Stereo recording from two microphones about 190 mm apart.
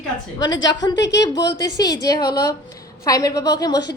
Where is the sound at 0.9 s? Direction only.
65° left (ahead or behind).